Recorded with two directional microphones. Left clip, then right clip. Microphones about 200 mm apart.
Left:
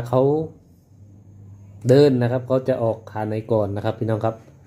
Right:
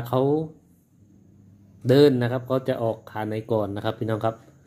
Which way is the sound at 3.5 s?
25° right (ahead or behind).